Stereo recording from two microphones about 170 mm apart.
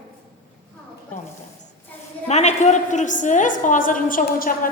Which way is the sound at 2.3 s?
40° left (ahead or behind).